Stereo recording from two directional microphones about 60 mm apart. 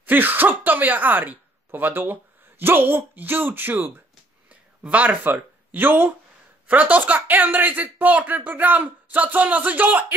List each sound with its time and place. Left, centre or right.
0.0 s speech: right